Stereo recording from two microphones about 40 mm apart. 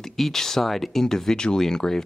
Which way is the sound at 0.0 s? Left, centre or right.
Centre.